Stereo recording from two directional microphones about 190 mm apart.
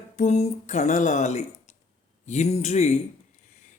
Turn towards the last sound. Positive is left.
turn(degrees=40)  # may be behind; listen again after turning